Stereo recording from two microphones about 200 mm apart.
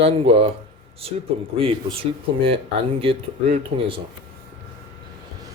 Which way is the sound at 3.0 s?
30° right (ahead or behind).